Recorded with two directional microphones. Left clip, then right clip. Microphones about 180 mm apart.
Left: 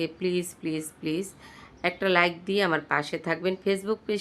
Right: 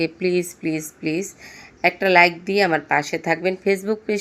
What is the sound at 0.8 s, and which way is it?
Speech, 35° left (ahead or behind).